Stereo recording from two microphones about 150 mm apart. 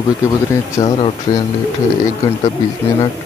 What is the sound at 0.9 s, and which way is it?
Speech, 40° left (ahead or behind).